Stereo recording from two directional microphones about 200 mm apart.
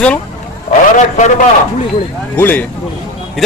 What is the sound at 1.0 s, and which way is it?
Speech, 35° left (ahead or behind).